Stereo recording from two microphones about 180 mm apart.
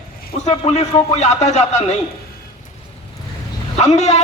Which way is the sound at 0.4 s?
35° left (ahead or behind).